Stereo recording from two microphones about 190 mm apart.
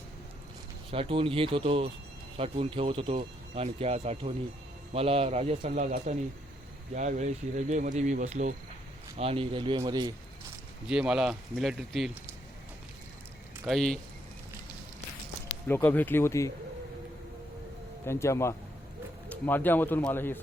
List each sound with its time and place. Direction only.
0.9 s speech: 30° right (ahead or behind)
10.8 s speech: 5° right (ahead or behind)
13.7 s speech: centre (ahead or behind)
15.6 s speech: 10° left (ahead or behind)
18.0 s speech: 15° left (ahead or behind)